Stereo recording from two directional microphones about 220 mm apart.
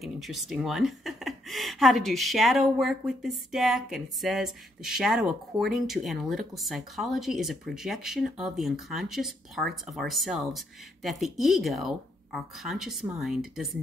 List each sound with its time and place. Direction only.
0.0 s speech: centre (ahead or behind)